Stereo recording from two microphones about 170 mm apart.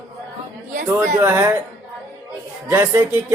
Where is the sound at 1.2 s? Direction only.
15° right (ahead or behind).